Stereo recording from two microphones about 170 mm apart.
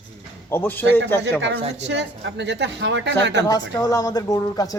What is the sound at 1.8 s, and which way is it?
Speech, 90° right.